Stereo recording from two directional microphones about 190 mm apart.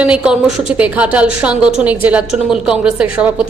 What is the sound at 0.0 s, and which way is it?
A woman's voice, 5° right (ahead or behind).